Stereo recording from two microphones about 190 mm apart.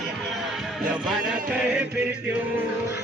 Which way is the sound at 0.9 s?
5° right (ahead or behind).